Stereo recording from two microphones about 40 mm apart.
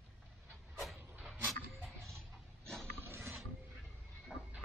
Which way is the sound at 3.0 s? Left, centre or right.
Right.